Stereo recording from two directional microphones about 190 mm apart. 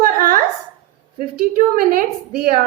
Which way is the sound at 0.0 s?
50° right (ahead or behind).